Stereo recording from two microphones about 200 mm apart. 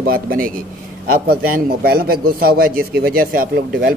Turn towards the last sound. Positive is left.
turn(degrees=-45)  # may be behind; listen again after turning